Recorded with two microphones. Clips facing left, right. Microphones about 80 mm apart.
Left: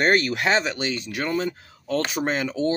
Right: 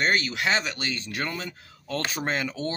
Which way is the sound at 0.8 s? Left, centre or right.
Centre.